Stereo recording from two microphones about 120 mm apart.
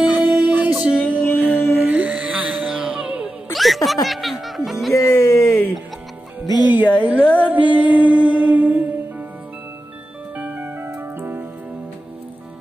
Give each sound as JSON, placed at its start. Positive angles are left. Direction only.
{"t": 0.2, "sound": "music", "side_deg": -10}
{"t": 1.5, "sound": "music", "side_deg": 15}
{"t": 1.8, "sound": "music", "side_deg": -10}
{"t": 4.9, "sound": "a sound", "side_deg": 20}
{"t": 6.4, "sound": "speech", "side_deg": 35}
{"t": 6.7, "sound": "music", "side_deg": -15}
{"t": 10.3, "sound": "music", "side_deg": -15}